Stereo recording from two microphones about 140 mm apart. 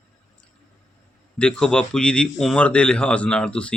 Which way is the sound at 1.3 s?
5° left (ahead or behind).